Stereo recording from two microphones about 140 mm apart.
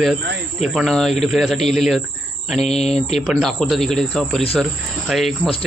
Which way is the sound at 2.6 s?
50° left (ahead or behind).